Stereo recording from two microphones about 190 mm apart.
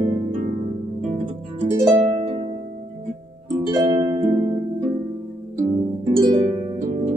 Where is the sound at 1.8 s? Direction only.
25° right (ahead or behind).